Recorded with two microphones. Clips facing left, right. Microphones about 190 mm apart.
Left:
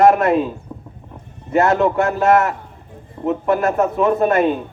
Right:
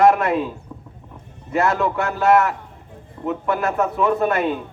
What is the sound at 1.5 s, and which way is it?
A man's voice, 40° left (ahead or behind).